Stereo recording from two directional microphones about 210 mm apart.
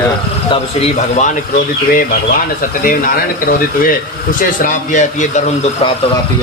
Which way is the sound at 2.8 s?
40° left (ahead or behind).